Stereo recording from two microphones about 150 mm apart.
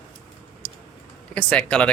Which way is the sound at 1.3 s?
10° left (ahead or behind).